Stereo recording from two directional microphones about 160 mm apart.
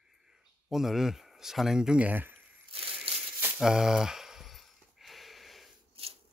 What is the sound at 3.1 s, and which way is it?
Crumpling, 35° right (ahead or behind).